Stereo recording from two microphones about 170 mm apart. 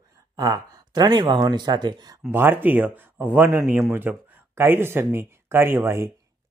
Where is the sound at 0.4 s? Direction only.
20° right (ahead or behind).